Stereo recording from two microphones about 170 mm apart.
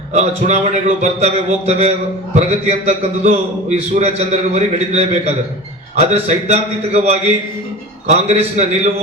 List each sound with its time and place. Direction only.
0.1 s a man's voice: 40° right (ahead or behind)